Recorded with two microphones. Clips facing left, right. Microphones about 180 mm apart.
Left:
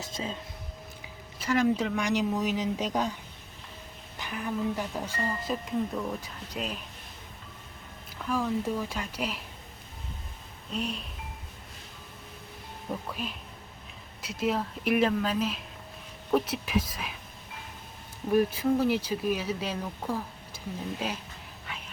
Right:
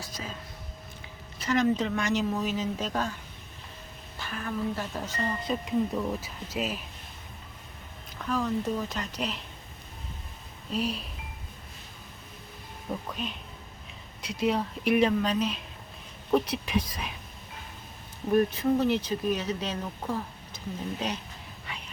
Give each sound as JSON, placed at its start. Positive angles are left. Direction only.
{"t": 0.0, "sound": "speech", "side_deg": 25}
{"t": 1.0, "sound": "speech", "side_deg": 10}
{"t": 4.2, "sound": "speech", "side_deg": 15}
{"t": 8.2, "sound": "speech", "side_deg": 10}
{"t": 10.7, "sound": "speech", "side_deg": 0}
{"t": 12.9, "sound": "speech", "side_deg": 5}
{"t": 18.3, "sound": "speech", "side_deg": 5}
{"t": 21.7, "sound": "a sound", "side_deg": 0}